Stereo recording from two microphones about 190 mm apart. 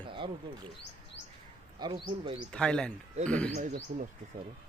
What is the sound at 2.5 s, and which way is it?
Speech, 5° left (ahead or behind).